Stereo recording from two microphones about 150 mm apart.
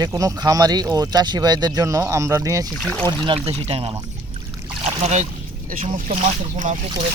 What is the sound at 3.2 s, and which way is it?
Speech, 40° right (ahead or behind).